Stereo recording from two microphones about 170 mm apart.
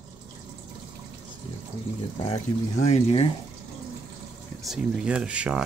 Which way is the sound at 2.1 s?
40° left (ahead or behind).